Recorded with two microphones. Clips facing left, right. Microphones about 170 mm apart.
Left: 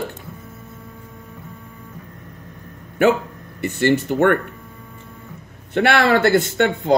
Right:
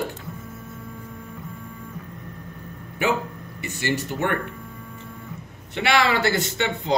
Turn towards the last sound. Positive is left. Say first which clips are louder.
# left 7 dB
turn(degrees=50)  # may be behind; listen again after turning